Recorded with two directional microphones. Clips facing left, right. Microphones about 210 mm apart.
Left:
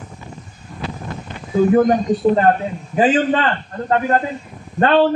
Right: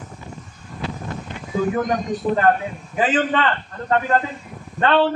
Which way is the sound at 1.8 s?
30° left (ahead or behind).